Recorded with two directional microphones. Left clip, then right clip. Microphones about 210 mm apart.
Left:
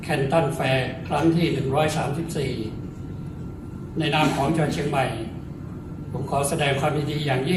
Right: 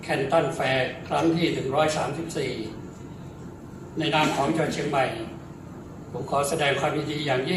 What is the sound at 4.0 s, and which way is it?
A man's voice, 15° left (ahead or behind).